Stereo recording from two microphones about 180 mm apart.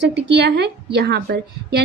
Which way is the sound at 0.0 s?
70° right (ahead or behind).